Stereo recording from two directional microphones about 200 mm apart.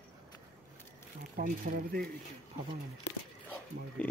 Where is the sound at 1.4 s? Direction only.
45° right (ahead or behind).